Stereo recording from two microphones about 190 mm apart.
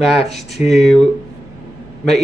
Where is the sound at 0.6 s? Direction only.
Centre (ahead or behind).